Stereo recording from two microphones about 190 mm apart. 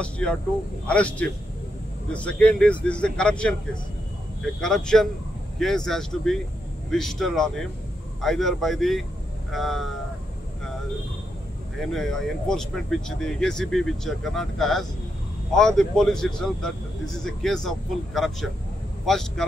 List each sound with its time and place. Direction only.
0.0 s speech: 5° left (ahead or behind)
4.6 s speech: centre (ahead or behind)
11.8 s speech: centre (ahead or behind)